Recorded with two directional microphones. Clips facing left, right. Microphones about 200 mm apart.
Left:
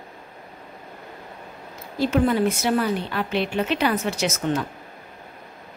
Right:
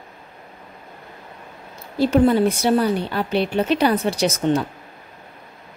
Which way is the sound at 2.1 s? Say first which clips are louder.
Right 4 dB; 30° right (ahead or behind).